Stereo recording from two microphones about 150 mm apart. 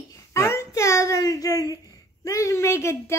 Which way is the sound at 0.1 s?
20° left (ahead or behind).